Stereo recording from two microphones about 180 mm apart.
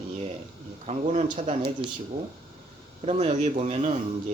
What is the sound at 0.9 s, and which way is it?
Speech, 40° right (ahead or behind).